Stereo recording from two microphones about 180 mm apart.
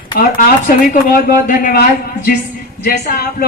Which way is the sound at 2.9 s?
60° left (ahead or behind).